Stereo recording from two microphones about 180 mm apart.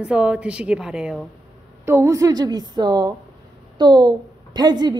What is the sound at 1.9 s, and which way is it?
A woman's voice, 15° right (ahead or behind).